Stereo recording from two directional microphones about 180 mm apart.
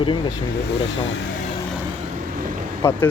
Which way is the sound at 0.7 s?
85° left.